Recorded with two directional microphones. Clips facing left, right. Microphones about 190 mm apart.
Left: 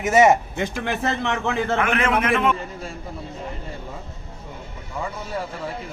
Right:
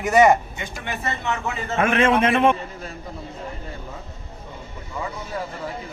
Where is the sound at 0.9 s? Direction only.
90° left.